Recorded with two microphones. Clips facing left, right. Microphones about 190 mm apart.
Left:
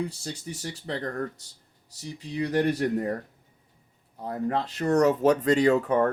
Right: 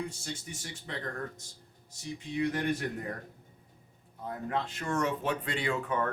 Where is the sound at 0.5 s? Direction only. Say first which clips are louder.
Left 8 dB; 35° left (ahead or behind).